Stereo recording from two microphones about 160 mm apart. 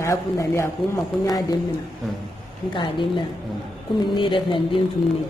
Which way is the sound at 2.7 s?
30° left (ahead or behind).